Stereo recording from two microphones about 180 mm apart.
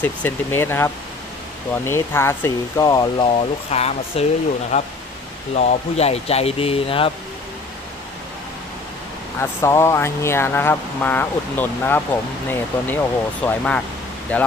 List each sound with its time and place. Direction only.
0.0 s speech: 10° left (ahead or behind)
3.7 s speech: 35° left (ahead or behind)
9.4 s speech: 15° left (ahead or behind)